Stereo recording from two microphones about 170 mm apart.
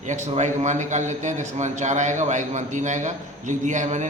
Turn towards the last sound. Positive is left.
turn(degrees=-45)  # may be behind; listen again after turning